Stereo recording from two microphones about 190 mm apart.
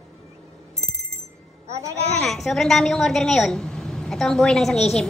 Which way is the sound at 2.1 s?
Centre (ahead or behind).